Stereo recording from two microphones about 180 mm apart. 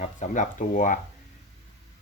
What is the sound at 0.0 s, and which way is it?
Speech, 45° left (ahead or behind).